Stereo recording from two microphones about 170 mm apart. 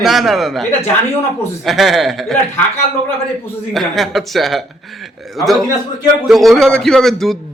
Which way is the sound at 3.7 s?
Centre (ahead or behind).